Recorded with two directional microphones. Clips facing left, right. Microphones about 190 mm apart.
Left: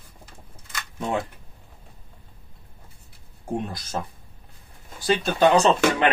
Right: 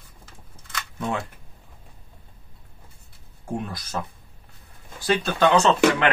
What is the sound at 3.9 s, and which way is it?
Speech, 30° left (ahead or behind).